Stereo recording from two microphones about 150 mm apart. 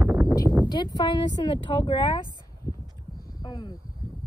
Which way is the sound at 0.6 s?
30° left (ahead or behind).